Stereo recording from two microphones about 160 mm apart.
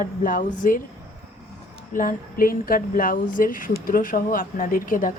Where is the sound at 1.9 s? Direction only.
60° left (ahead or behind).